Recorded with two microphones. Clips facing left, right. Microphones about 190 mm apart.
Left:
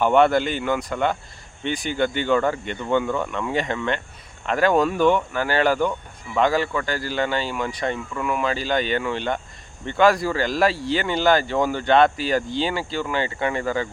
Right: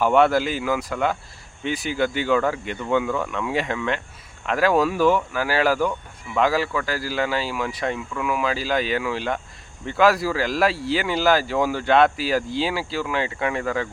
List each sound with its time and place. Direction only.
0.0 s speech: centre (ahead or behind)